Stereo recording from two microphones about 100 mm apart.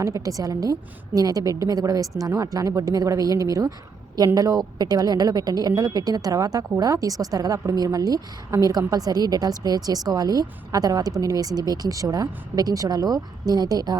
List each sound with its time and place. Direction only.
0.0 s speech: 35° right (ahead or behind)